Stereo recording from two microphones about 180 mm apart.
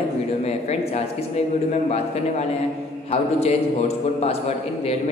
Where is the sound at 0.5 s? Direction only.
35° left (ahead or behind).